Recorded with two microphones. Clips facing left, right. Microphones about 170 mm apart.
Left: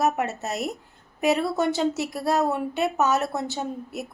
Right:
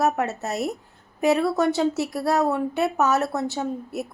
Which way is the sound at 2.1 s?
20° left (ahead or behind).